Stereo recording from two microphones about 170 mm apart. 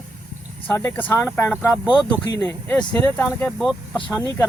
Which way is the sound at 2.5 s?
10° left (ahead or behind).